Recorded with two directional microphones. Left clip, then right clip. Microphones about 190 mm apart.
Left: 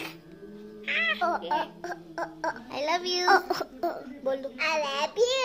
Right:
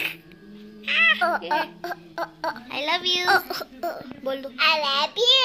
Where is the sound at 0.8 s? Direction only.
15° right (ahead or behind).